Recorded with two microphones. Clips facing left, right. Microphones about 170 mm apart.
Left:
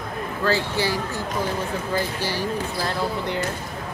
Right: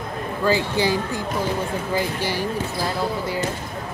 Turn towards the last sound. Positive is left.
turn(degrees=-15)  # may be behind; listen again after turning